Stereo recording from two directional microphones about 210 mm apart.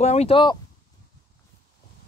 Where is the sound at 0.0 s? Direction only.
30° left (ahead or behind).